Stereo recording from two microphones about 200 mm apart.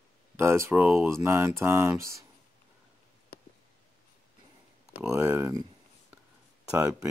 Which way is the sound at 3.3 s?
50° left (ahead or behind).